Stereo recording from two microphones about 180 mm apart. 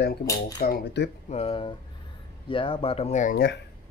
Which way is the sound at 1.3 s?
35° left (ahead or behind).